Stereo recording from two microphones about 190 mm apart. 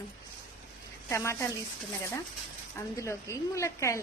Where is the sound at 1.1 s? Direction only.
15° left (ahead or behind).